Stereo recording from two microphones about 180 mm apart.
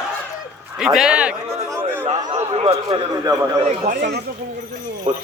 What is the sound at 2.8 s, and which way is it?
Speech, 20° right (ahead or behind).